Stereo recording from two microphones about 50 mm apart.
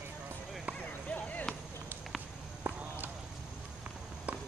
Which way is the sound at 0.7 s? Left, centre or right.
Left.